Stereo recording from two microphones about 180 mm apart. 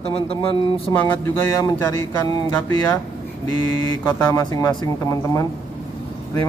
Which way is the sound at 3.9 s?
20° left (ahead or behind).